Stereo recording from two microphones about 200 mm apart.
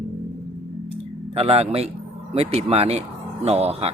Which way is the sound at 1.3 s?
30° right (ahead or behind).